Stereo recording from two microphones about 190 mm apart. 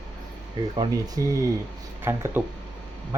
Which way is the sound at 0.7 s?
20° right (ahead or behind).